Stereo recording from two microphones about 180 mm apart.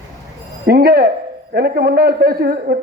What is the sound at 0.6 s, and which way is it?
A man's voice, 55° right (ahead or behind).